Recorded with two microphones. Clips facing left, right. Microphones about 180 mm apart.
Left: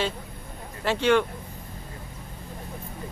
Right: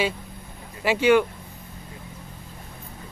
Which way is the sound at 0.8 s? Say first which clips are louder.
Right 3 dB; 5° right (ahead or behind).